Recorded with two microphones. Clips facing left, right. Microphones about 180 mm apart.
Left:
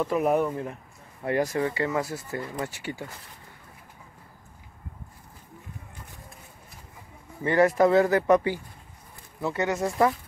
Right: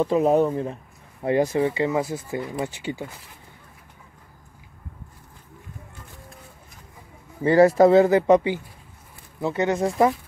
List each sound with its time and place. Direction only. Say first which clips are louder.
0.0 s speech: right 5 dB; 25° right (ahead or behind)
7.4 s speech: right 5 dB; 30° right (ahead or behind)